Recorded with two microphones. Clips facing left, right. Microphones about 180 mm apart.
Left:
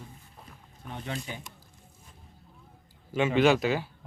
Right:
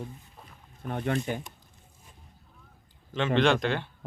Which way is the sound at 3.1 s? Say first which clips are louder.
Left 1 dB; 10° left (ahead or behind).